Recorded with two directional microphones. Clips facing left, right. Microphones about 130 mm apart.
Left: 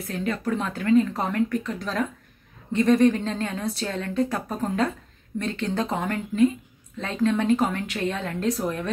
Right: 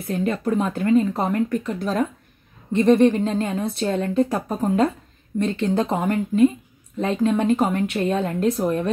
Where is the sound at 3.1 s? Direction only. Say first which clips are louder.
Right 3 dB; 15° right (ahead or behind).